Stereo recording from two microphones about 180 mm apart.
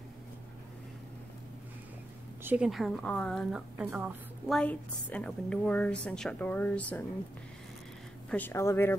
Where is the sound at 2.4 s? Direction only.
5° right (ahead or behind).